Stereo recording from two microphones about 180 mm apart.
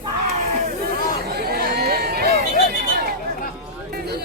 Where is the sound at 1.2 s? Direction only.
60° right (ahead or behind).